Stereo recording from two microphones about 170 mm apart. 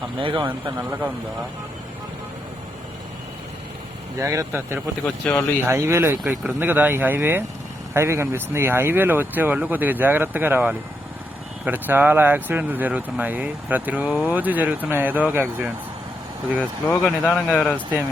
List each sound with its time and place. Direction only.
0.2 s speech: 30° right (ahead or behind)
0.6 s speech: 10° right (ahead or behind)
4.2 s speech: 20° right (ahead or behind)
5.0 s speech: 5° left (ahead or behind)
5.6 s speech: 15° right (ahead or behind)
17.0 s speech: 5° left (ahead or behind)